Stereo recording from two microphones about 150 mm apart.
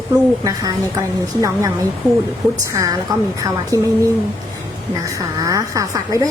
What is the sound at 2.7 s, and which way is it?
A woman's voice, 25° right (ahead or behind).